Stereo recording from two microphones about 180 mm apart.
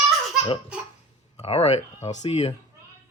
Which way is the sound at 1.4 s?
35° left (ahead or behind).